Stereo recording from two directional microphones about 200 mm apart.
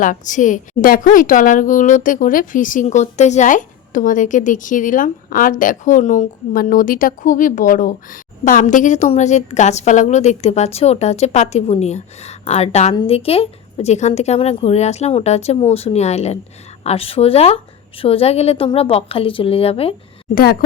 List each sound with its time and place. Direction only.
0.0 s a woman's voice: 40° left (ahead or behind)
20.3 s speech: 50° left (ahead or behind)